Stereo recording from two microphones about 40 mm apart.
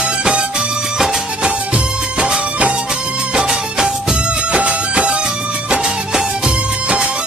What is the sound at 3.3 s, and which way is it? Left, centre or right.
Music, centre.